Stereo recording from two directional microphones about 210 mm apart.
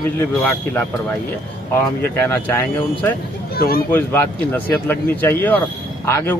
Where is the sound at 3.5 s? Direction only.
45° left (ahead or behind).